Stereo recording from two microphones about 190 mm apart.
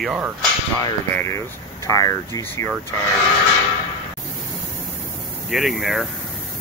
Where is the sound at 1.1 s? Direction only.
15° left (ahead or behind).